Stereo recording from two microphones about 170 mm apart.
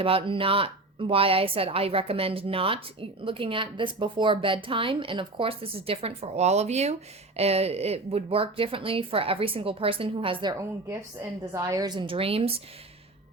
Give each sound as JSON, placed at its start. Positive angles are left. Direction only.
{"t": 0.0, "sound": "speech", "side_deg": -30}
{"t": 11.2, "sound": "speech", "side_deg": -15}